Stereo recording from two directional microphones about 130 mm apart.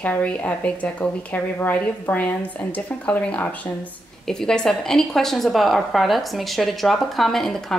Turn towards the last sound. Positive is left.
turn(degrees=5)  # may be behind; listen again after turning